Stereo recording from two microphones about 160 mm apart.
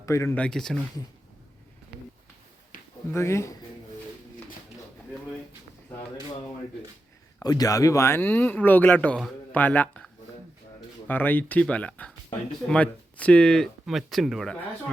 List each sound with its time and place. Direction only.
0.0 s speech: 20° left (ahead or behind)
0.4 s speech: 5° left (ahead or behind)
3.1 s speech: 15° left (ahead or behind)
7.4 s speech: 25° left (ahead or behind)
11.1 s speech: 10° left (ahead or behind)